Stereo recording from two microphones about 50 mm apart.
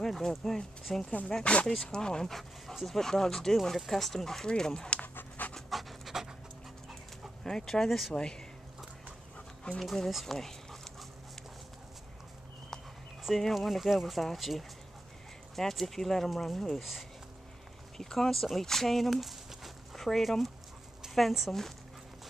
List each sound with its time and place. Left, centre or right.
0.0 s speech: centre
1.4 s speech: left
5.0 s dog: left
5.7 s pant: centre
7.4 s speech: centre
9.8 s speech: centre
13.4 s speech: centre